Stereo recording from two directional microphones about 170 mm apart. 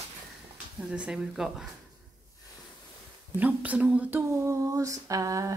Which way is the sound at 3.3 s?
10° right (ahead or behind).